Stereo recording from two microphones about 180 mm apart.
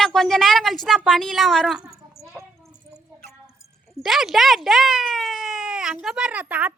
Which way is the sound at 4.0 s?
Centre (ahead or behind).